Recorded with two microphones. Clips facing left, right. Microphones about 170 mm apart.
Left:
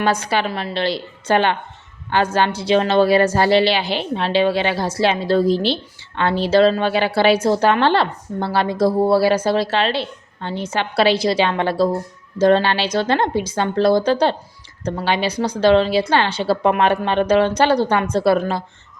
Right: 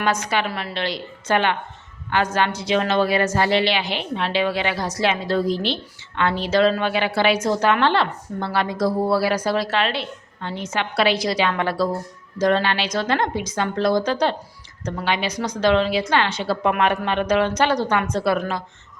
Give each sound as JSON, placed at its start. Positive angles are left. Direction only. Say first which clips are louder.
{"t": 0.0, "sound": "a woman's voice", "louder": "left 3 dB", "side_deg": 30}